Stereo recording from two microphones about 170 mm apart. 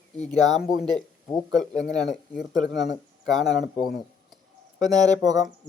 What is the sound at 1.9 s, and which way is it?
Speech, 25° right (ahead or behind).